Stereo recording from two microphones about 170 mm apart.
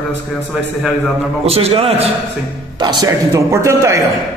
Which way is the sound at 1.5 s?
35° right (ahead or behind).